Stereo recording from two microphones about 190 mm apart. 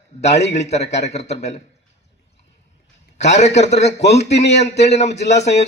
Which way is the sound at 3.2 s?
35° left (ahead or behind).